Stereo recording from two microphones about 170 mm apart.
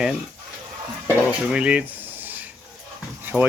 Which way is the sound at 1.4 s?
5° right (ahead or behind).